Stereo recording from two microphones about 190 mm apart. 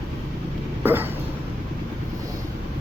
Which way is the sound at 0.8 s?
10° right (ahead or behind).